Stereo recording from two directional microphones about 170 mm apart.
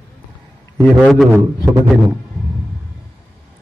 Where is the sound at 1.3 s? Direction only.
15° right (ahead or behind).